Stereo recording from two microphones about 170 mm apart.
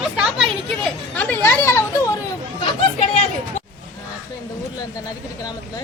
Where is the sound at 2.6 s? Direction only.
40° left (ahead or behind).